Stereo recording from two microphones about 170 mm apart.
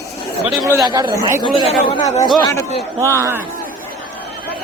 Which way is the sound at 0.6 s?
20° right (ahead or behind).